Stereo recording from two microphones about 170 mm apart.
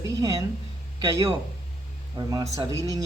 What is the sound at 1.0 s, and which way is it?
Speech, 20° right (ahead or behind).